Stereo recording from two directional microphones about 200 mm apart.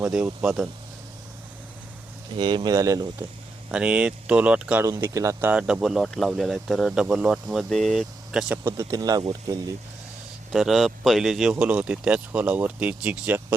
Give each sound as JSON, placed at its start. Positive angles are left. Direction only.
{"t": 0.0, "sound": "speech", "side_deg": -5}
{"t": 2.3, "sound": "speech", "side_deg": -20}
{"t": 3.7, "sound": "speech", "side_deg": -5}
{"t": 8.6, "sound": "speech", "side_deg": -15}
{"t": 10.5, "sound": "speech", "side_deg": 0}